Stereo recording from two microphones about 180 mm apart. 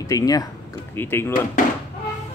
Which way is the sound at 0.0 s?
20° left (ahead or behind).